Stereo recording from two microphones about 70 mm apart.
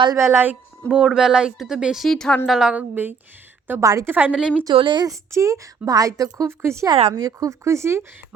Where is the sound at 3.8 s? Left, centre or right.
Right.